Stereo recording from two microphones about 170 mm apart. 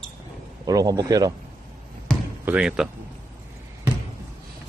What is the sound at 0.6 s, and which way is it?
Speech, 20° right (ahead or behind).